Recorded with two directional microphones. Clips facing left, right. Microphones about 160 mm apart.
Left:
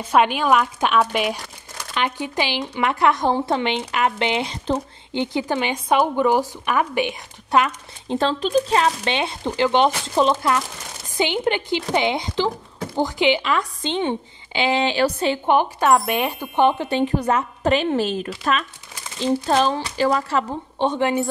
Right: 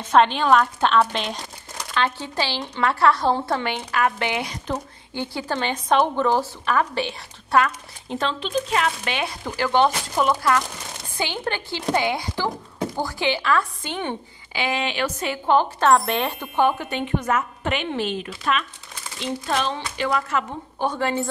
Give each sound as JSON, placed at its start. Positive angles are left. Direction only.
{"t": 0.1, "sound": "speech", "side_deg": 10}
{"t": 8.1, "sound": "a woman's voice", "side_deg": 35}
{"t": 16.7, "sound": "speech", "side_deg": 30}